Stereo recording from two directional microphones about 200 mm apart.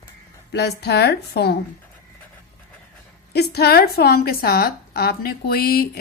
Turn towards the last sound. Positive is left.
turn(degrees=50)  # may be behind; listen again after turning